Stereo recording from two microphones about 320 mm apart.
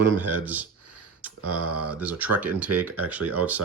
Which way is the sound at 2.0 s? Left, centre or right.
Centre.